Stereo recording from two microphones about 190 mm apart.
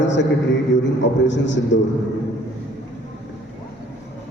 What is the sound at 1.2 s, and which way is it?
Speech, 70° left (ahead or behind).